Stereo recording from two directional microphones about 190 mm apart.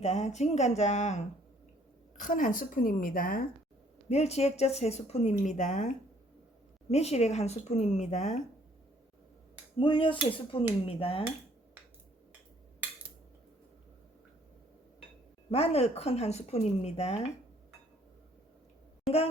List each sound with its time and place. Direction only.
0.0 s a woman's voice: 35° left (ahead or behind)
4.1 s speech: 35° left (ahead or behind)
6.9 s speech: 35° left (ahead or behind)
9.7 s speech: 25° left (ahead or behind)
15.4 s speech: 30° left (ahead or behind)